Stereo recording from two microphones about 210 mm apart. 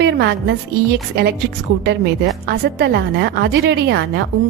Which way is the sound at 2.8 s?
50° right (ahead or behind).